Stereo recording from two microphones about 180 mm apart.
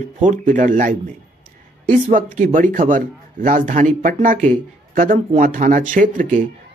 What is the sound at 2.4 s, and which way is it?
Speech, 45° right (ahead or behind).